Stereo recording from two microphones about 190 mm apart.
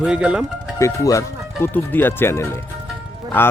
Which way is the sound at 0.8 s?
15° left (ahead or behind).